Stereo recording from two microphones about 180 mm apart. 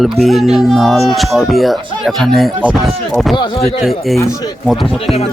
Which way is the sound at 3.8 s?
Centre (ahead or behind).